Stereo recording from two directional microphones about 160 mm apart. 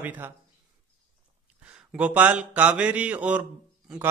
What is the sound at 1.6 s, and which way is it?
A man's voice, 10° right (ahead or behind).